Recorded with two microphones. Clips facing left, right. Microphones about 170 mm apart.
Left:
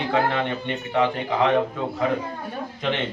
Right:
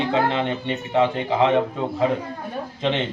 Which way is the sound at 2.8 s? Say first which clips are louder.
Right 3 dB; 25° right (ahead or behind).